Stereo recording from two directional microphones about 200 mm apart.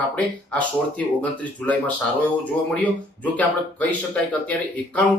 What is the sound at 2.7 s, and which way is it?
Speech, 5° left (ahead or behind).